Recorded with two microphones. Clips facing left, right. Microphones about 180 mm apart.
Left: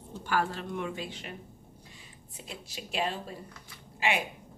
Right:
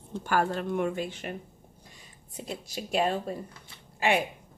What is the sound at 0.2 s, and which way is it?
Speech, 50° right (ahead or behind).